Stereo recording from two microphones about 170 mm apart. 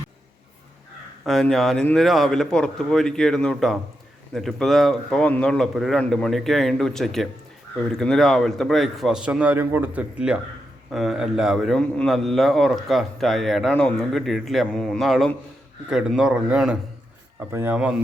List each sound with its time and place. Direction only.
1.2 s a man's voice: centre (ahead or behind)